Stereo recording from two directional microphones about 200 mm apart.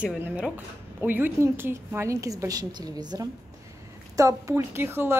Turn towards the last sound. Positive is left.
turn(degrees=-10)  # may be behind; listen again after turning